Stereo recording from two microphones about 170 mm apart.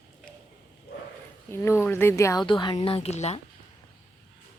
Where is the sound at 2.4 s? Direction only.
25° left (ahead or behind).